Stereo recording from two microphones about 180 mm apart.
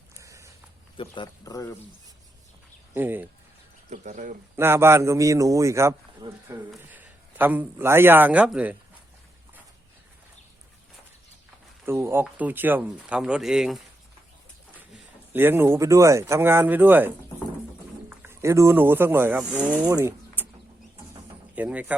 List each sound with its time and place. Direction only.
0.2 s walk: 15° right (ahead or behind)
0.9 s speech: 25° left (ahead or behind)
2.9 s a man's voice: 10° right (ahead or behind)
3.8 s speech: 40° right (ahead or behind)
4.5 s a man's voice: 15° right (ahead or behind)
11.9 s a man's voice: 15° right (ahead or behind)
15.3 s a man's voice: 10° right (ahead or behind)
18.1 s speech: 10° right (ahead or behind)
21.5 s speech: 10° right (ahead or behind)